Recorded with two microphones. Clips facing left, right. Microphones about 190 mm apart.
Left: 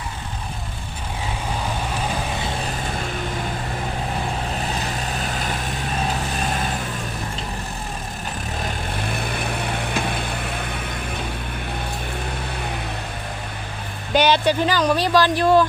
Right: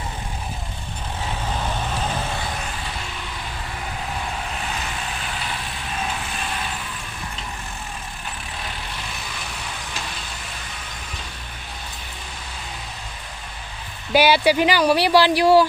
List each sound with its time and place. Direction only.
5.2 s vehicle: 45° left (ahead or behind)
8.6 s vehicle: 55° left (ahead or behind)
14.1 s speech: 10° right (ahead or behind)